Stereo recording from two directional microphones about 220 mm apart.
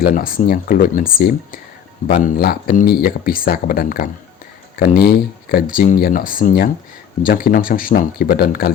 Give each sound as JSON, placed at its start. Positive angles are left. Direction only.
{"t": 0.0, "sound": "speech", "side_deg": 40}